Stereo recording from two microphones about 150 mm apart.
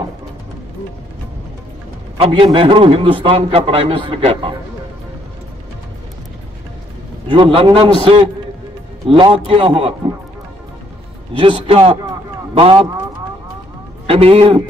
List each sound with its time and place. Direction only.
2.1 s a man's voice: 40° right (ahead or behind)
7.2 s a man's voice: 35° right (ahead or behind)
11.3 s a man's voice: 35° right (ahead or behind)
14.0 s a man's voice: 40° right (ahead or behind)